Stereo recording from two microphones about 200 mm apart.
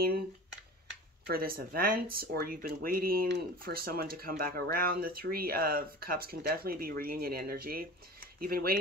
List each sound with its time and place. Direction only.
1.2 s speech: 50° right (ahead or behind)